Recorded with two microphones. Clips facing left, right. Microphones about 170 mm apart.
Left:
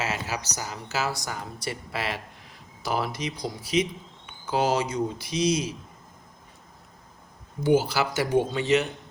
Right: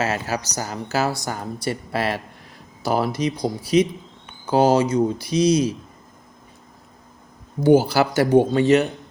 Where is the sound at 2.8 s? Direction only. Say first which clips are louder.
Right 7 dB; 35° right (ahead or behind).